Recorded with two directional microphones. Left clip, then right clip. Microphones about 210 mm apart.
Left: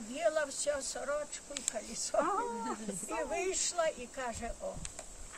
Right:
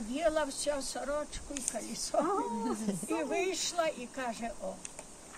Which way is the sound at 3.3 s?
10° left (ahead or behind).